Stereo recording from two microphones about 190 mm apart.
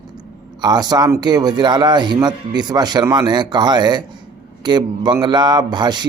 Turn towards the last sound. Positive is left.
turn(degrees=-20)  # may be behind; listen again after turning